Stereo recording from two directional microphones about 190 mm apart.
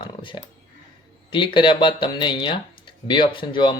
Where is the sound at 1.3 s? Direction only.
25° left (ahead or behind).